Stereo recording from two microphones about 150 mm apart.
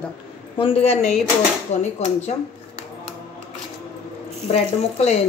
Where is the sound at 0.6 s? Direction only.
40° left (ahead or behind).